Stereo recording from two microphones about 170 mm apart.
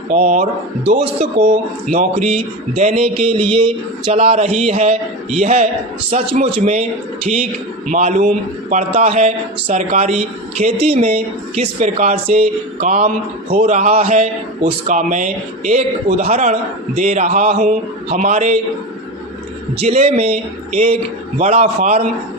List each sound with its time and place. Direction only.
0.1 s a man's voice: 45° right (ahead or behind)
19.8 s speech: 35° right (ahead or behind)